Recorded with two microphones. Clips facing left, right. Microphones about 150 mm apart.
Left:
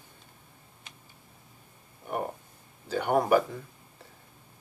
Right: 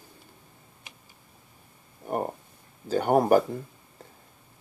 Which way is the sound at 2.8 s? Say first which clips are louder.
Right 4 dB; 45° right (ahead or behind).